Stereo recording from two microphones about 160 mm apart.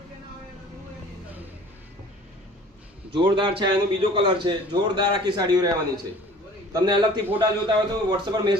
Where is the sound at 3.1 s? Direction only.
30° right (ahead or behind).